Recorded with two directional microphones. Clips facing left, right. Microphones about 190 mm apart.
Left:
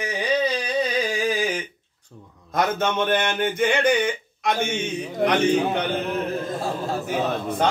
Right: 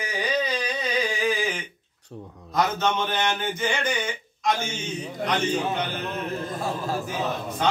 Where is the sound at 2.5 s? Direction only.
55° left (ahead or behind).